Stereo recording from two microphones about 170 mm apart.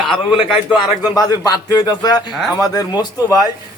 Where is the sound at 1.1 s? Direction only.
25° left (ahead or behind).